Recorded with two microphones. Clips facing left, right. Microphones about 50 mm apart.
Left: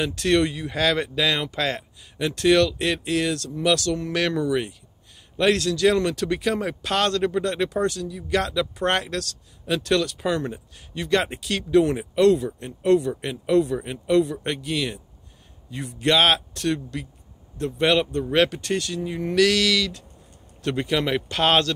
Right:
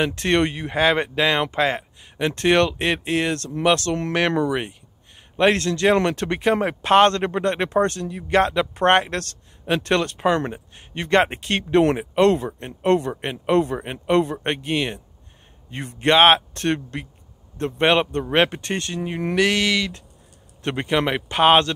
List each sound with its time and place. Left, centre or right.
0.0 s speech: right
19.3 s speech: right